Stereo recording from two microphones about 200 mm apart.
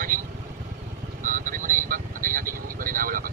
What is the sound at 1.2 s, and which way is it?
Vehicle, 40° right (ahead or behind).